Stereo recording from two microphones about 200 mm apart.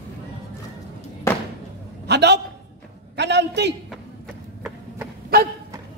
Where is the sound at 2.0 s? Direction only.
55° right (ahead or behind).